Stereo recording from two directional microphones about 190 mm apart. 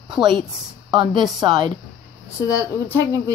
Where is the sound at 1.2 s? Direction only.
25° right (ahead or behind).